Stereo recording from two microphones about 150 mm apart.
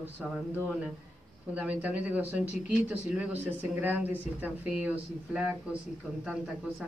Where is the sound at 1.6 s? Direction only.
10° right (ahead or behind).